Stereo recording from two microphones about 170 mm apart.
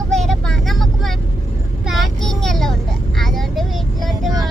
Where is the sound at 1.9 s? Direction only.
Centre (ahead or behind).